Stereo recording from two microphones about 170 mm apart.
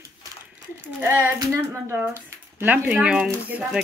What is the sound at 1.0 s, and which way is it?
Speech, 15° right (ahead or behind).